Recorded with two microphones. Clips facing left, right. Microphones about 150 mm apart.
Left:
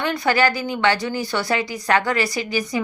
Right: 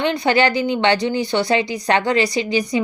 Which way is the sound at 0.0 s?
20° right (ahead or behind).